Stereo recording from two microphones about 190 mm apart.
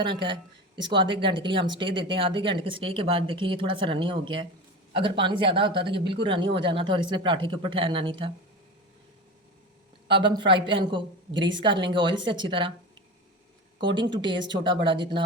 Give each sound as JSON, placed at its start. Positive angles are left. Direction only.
{"t": 0.0, "sound": "speech", "side_deg": -25}
{"t": 10.1, "sound": "speech", "side_deg": -25}
{"t": 13.8, "sound": "speech", "side_deg": -25}